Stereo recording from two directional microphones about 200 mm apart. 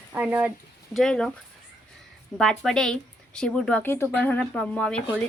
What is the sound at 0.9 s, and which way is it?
Speech, centre (ahead or behind).